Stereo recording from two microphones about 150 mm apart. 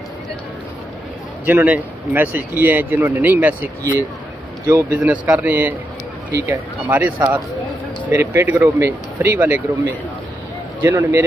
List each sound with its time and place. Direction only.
1.4 s speech: 10° right (ahead or behind)
10.8 s a man's voice: 15° right (ahead or behind)